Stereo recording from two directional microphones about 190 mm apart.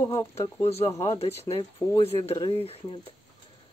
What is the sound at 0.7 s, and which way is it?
Speech, 35° left (ahead or behind).